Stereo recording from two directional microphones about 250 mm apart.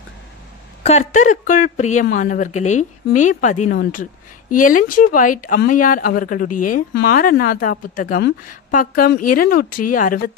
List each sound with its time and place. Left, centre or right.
0.8 s speech: left
9.6 s speech: left
9.9 s speech: left